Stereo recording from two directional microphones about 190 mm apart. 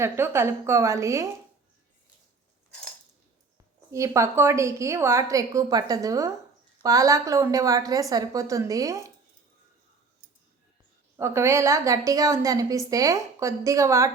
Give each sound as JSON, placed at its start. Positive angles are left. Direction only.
{"t": 0.0, "sound": "a woman's voice", "side_deg": -15}
{"t": 3.9, "sound": "a woman's voice", "side_deg": -15}
{"t": 11.2, "sound": "a woman's voice", "side_deg": -15}